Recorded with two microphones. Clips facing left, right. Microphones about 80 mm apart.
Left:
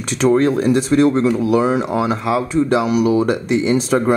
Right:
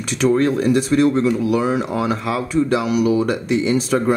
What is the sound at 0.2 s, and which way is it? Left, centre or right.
Speech, left.